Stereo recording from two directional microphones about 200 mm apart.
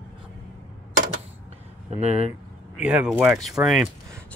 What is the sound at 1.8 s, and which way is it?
Speech, 35° right (ahead or behind).